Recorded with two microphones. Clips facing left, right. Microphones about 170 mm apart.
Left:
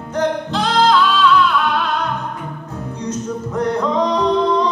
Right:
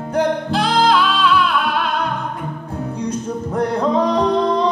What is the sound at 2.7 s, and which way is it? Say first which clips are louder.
Music: right 2 dB; 30° right (ahead or behind).